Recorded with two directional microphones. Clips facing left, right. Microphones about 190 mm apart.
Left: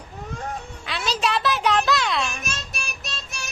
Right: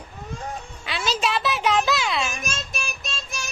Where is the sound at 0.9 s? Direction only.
Centre (ahead or behind).